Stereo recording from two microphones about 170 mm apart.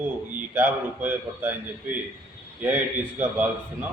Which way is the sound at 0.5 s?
15° right (ahead or behind).